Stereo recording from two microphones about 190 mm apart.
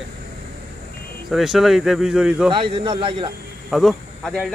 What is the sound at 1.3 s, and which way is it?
Speech, centre (ahead or behind).